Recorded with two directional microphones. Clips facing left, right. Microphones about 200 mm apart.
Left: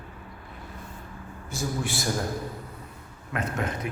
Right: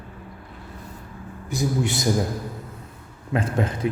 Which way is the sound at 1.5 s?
20° right (ahead or behind).